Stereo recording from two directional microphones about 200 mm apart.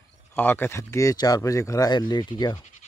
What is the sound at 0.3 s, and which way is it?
Speech, 10° left (ahead or behind).